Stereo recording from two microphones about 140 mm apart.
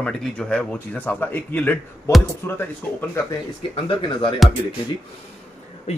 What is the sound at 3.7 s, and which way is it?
Speech, 35° left (ahead or behind).